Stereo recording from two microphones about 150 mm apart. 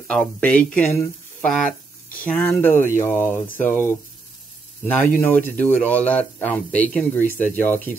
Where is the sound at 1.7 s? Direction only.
70° left (ahead or behind).